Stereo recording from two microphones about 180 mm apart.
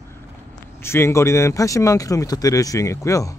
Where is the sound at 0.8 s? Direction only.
15° left (ahead or behind).